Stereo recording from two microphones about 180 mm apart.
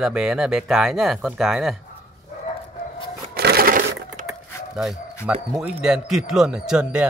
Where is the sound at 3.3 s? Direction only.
60° right (ahead or behind).